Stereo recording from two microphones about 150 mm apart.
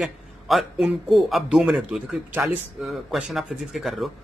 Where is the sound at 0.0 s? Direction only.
Centre (ahead or behind).